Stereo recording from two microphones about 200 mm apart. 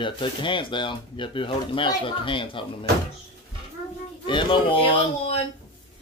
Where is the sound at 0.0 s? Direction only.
25° left (ahead or behind).